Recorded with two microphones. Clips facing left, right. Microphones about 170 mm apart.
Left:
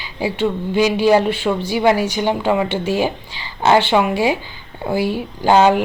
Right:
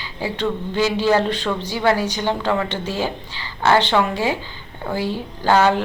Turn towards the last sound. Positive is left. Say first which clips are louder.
# left 3 dB
turn(degrees=15)  # may be behind; listen again after turning